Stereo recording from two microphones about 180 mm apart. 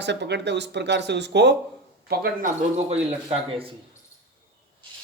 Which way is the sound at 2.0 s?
60° right (ahead or behind).